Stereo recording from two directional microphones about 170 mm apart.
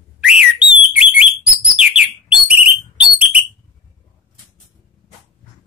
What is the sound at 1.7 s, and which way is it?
Bird, 5° right (ahead or behind).